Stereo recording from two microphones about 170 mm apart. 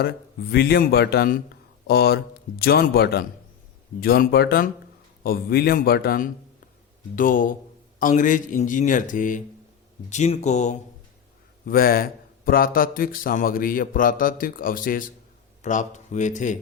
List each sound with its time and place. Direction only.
0.0 s speech: 65° left (ahead or behind); by 10.8 s 45° left (ahead or behind)
11.6 s speech: 60° left (ahead or behind)